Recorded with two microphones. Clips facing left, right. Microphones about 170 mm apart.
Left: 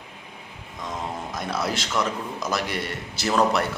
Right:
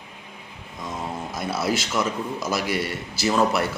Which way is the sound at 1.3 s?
5° right (ahead or behind).